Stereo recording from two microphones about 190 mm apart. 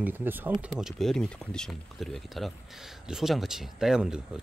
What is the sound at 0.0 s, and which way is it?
Speech, 10° right (ahead or behind).